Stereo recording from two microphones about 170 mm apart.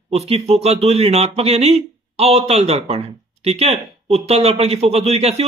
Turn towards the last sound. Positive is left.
turn(degrees=-35)  # may be behind; listen again after turning